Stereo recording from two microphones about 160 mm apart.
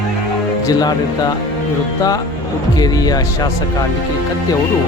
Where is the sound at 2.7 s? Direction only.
25° left (ahead or behind).